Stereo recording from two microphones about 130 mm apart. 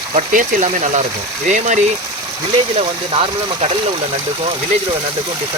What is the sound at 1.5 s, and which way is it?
Speech, 70° right (ahead or behind).